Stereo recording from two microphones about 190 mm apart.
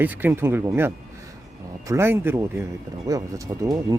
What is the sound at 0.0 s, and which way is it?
Speech, 10° right (ahead or behind).